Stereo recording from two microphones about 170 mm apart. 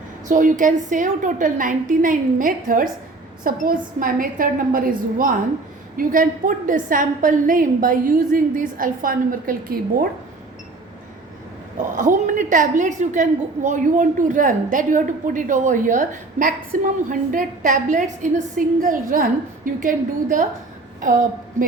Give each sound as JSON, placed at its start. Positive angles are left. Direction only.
{"t": 0.3, "sound": "a woman's voice", "side_deg": -50}
{"t": 11.9, "sound": "a woman's voice", "side_deg": -50}